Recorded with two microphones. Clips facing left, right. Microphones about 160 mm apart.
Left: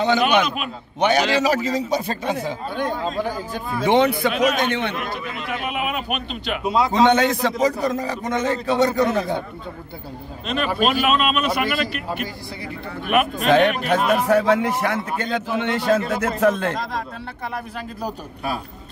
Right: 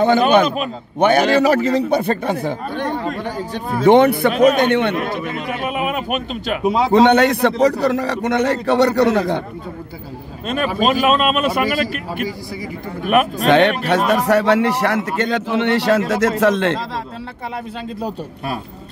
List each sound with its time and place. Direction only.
0.0 s a man's voice: 50° right (ahead or behind); by 3.2 s 65° right (ahead or behind)
3.7 s a man's voice: 55° right (ahead or behind)
6.9 s a man's voice: 60° right (ahead or behind)
10.8 s speech: 40° right (ahead or behind)
13.0 s speech: 45° right (ahead or behind)
13.5 s a man's voice: 75° right (ahead or behind)